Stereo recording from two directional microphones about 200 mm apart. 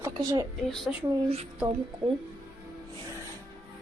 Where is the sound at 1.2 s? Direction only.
30° right (ahead or behind).